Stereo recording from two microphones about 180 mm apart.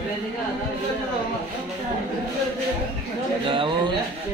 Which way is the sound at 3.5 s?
30° right (ahead or behind).